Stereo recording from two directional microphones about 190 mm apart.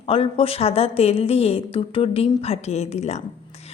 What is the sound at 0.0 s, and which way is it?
Speech, 30° left (ahead or behind).